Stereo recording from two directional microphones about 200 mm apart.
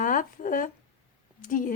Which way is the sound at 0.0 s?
40° left (ahead or behind).